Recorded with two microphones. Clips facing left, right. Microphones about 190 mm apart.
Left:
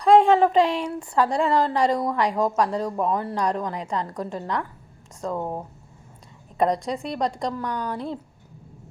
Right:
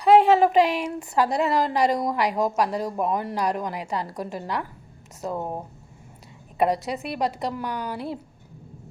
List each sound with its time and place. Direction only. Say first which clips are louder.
0.0 s a woman's voice: even; 5° right (ahead or behind)